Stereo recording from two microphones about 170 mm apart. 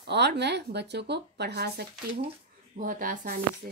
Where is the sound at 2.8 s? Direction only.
55° right (ahead or behind).